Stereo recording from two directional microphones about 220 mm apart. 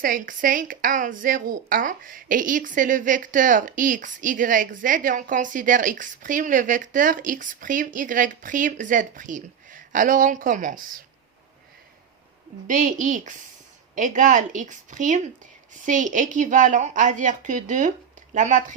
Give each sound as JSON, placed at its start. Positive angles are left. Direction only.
{"t": 0.0, "sound": "speech", "side_deg": -40}
{"t": 12.6, "sound": "speech", "side_deg": -35}